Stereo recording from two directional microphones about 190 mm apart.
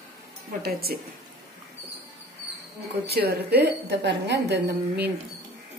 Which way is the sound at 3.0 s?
60° right (ahead or behind).